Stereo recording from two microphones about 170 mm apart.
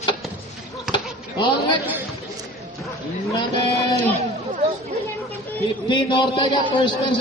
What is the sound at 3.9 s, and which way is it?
Speech, 40° right (ahead or behind).